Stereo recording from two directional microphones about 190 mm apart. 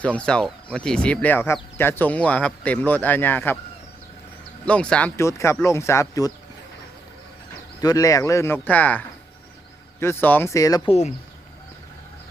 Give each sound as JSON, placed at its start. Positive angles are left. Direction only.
{"t": 0.0, "sound": "speech", "side_deg": 5}
{"t": 4.6, "sound": "speech", "side_deg": 5}
{"t": 7.8, "sound": "speech", "side_deg": 20}